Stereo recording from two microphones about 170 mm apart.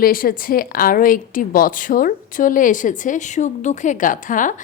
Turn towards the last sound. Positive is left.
turn(degrees=50)  # may be behind; listen again after turning